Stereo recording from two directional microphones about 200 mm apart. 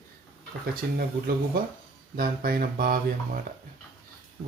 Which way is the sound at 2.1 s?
50° right (ahead or behind).